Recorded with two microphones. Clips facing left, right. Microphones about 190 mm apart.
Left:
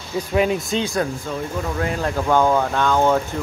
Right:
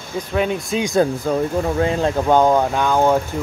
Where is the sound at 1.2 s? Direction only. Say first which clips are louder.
Right 7 dB; 40° right (ahead or behind).